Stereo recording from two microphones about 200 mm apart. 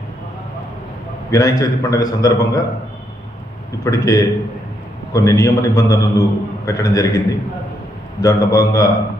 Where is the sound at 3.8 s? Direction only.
15° left (ahead or behind).